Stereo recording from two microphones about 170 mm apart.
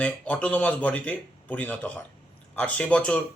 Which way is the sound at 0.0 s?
5° left (ahead or behind).